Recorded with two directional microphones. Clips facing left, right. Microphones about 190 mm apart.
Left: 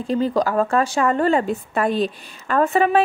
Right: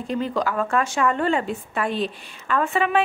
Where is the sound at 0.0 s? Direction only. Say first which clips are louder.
Left 5 dB; 35° left (ahead or behind).